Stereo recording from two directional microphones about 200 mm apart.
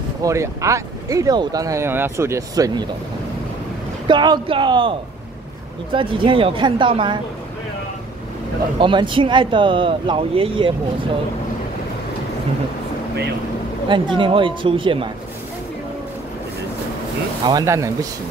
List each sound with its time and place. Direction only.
0.2 s speech: 15° right (ahead or behind)
4.1 s speech: 20° right (ahead or behind)
8.7 s speech: 25° right (ahead or behind)
13.8 s speech: 25° right (ahead or behind)
17.5 s speech: 15° right (ahead or behind)